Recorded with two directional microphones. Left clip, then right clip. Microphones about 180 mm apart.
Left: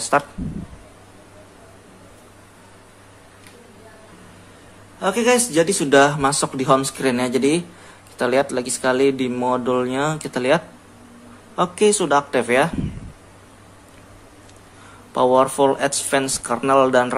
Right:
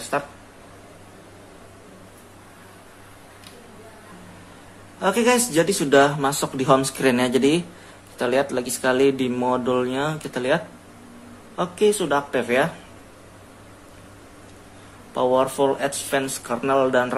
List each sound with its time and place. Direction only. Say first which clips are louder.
0.1 s speech: left 7 dB; 20° left (ahead or behind)
5.0 s speech: left 1 dB; 10° left (ahead or behind)
8.2 s speech: left 2 dB; 15° left (ahead or behind)
15.1 s speech: left 4 dB; 20° left (ahead or behind)